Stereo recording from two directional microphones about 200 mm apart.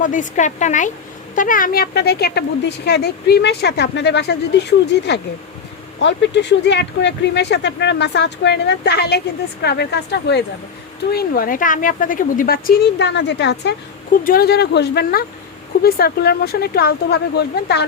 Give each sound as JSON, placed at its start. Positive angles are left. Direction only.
{"t": 0.0, "sound": "a woman's voice", "side_deg": 40}